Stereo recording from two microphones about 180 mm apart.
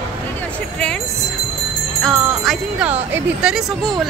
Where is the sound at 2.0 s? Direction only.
Centre (ahead or behind).